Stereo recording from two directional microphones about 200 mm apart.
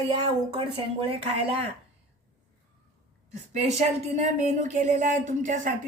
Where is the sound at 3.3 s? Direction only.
35° right (ahead or behind).